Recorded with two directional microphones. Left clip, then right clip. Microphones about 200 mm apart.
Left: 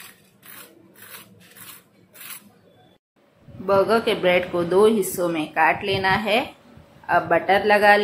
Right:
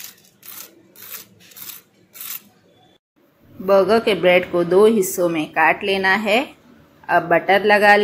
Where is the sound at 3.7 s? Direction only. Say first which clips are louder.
Right 4 dB; 20° right (ahead or behind).